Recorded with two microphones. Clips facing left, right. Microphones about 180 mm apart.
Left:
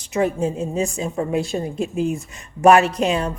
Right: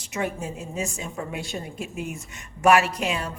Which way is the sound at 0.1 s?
30° left (ahead or behind).